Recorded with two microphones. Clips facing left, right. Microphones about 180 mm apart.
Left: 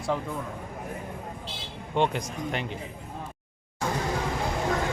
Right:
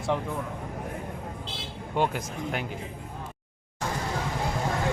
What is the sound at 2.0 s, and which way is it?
Speech, 5° right (ahead or behind).